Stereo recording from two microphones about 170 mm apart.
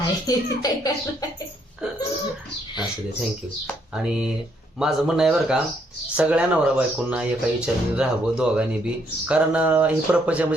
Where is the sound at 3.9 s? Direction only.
5° right (ahead or behind).